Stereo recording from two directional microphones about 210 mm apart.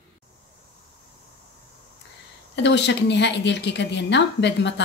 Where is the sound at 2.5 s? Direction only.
55° left (ahead or behind).